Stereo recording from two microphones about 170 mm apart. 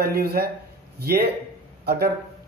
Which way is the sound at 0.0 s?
65° right (ahead or behind).